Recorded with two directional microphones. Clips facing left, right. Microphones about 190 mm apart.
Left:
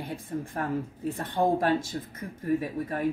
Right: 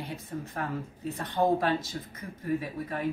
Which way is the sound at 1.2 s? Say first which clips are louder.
Even; 45° left (ahead or behind).